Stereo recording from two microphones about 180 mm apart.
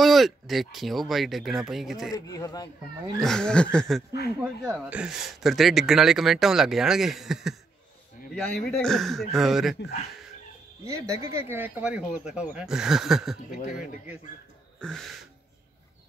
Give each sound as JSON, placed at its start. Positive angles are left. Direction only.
{"t": 0.0, "sound": "speech", "side_deg": 0}
{"t": 2.1, "sound": "speech", "side_deg": 20}
{"t": 3.2, "sound": "speech", "side_deg": 5}
{"t": 10.9, "sound": "speech", "side_deg": -15}
{"t": 13.5, "sound": "speech", "side_deg": 45}
{"t": 14.8, "sound": "speech", "side_deg": 5}